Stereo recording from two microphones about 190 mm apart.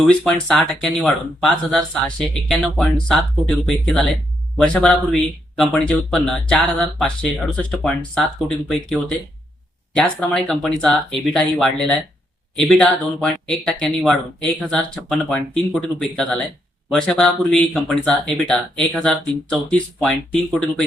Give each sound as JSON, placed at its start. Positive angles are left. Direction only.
{"t": 0.1, "sound": "speech", "side_deg": 5}